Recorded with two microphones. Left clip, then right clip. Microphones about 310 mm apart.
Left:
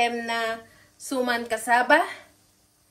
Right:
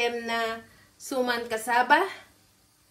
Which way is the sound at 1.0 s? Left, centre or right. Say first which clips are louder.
Left 2 dB; left.